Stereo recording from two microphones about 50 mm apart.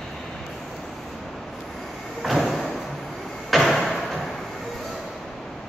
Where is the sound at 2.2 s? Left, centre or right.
Centre.